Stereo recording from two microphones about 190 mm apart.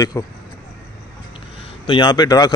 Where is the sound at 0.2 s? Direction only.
15° left (ahead or behind).